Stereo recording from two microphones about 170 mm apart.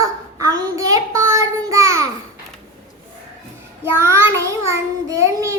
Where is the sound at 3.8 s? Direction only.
15° right (ahead or behind).